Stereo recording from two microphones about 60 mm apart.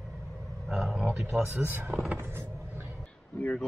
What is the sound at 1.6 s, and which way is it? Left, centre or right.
Speech, right.